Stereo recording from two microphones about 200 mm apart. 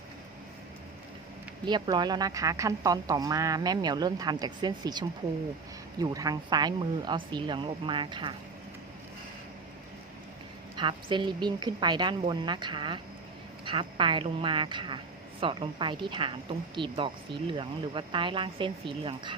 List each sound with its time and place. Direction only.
1.6 s a woman's voice: 20° right (ahead or behind)
10.8 s a woman's voice: 25° right (ahead or behind)